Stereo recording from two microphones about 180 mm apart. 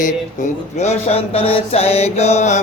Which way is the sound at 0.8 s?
40° left (ahead or behind).